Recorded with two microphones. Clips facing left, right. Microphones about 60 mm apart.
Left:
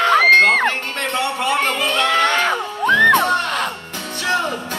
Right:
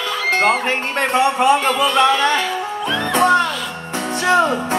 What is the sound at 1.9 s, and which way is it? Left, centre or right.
Music, left.